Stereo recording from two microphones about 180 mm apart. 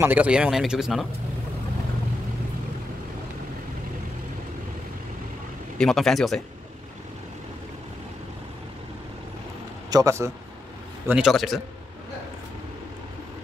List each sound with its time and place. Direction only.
0.0 s speech: 10° right (ahead or behind)
5.8 s speech: centre (ahead or behind)
9.8 s speech: 20° right (ahead or behind)
11.1 s speech: 5° right (ahead or behind)